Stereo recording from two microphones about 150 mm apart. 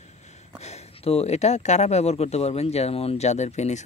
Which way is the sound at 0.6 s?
45° left (ahead or behind).